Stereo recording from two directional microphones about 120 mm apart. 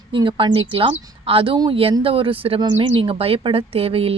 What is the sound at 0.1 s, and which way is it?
Speech, 45° right (ahead or behind).